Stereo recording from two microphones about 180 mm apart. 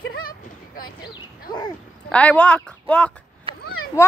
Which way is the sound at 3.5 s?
30° right (ahead or behind).